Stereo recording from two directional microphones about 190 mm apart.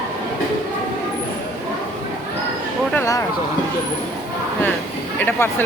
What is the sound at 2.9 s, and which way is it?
Speech, 15° left (ahead or behind).